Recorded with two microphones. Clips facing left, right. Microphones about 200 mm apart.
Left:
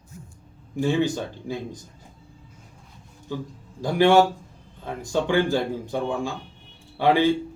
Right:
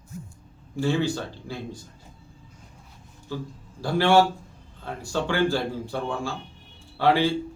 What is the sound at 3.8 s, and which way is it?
A man's voice, 15° left (ahead or behind).